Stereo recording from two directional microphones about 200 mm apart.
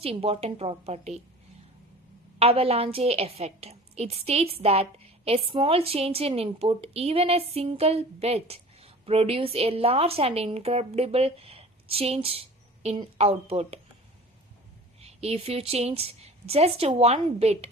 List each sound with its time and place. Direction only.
0.0 s a woman's voice: 30° right (ahead or behind)
2.4 s a woman's voice: 30° right (ahead or behind)
15.0 s a woman's voice: 30° right (ahead or behind)